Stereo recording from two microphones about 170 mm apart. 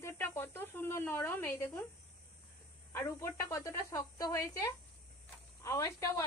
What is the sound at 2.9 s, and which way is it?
Speech, 15° left (ahead or behind).